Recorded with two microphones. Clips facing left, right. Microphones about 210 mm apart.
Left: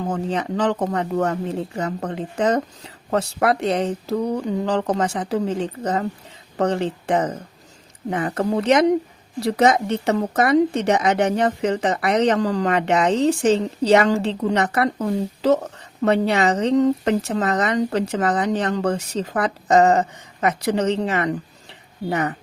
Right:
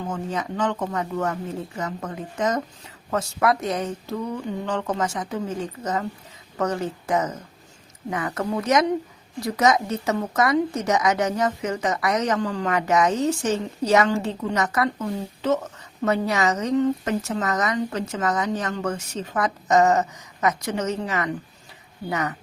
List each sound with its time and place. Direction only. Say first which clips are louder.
0.1 s speech: left 4 dB; 30° left (ahead or behind)